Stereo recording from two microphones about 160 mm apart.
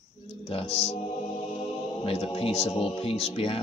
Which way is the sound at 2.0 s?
35° left (ahead or behind).